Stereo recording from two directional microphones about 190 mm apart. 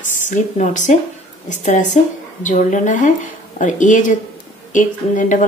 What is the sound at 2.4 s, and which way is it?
Speech, 40° left (ahead or behind).